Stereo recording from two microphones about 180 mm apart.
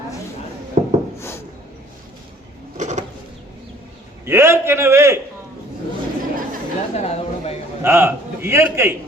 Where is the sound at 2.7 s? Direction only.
40° right (ahead or behind).